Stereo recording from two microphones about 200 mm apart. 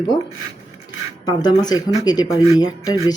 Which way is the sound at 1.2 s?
20° left (ahead or behind).